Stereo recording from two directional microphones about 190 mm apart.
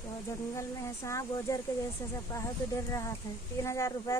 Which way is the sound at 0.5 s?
15° left (ahead or behind).